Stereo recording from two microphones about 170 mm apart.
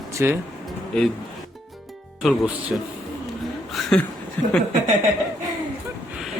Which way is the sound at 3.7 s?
5° left (ahead or behind).